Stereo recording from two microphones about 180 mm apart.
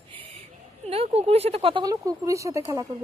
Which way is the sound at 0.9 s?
35° right (ahead or behind).